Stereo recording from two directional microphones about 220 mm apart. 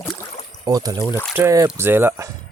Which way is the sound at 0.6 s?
15° right (ahead or behind).